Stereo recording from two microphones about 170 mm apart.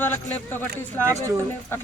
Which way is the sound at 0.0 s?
10° left (ahead or behind).